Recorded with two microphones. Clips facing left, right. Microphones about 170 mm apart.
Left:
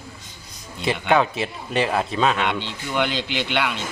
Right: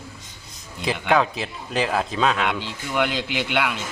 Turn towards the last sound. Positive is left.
turn(degrees=-5)  # may be behind; listen again after turning